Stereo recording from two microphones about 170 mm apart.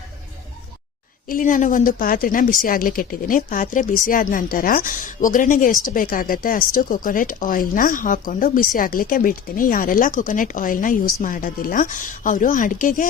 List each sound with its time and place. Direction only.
1.3 s a woman's voice: 50° left (ahead or behind)